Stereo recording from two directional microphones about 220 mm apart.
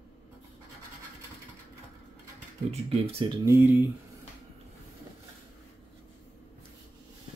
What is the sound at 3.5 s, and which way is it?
Speech, 10° right (ahead or behind).